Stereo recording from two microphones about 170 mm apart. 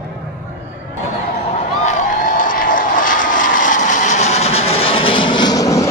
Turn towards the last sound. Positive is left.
turn(degrees=20)  # may be behind; listen again after turning